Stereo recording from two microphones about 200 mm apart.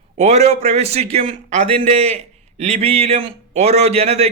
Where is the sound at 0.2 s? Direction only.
35° right (ahead or behind).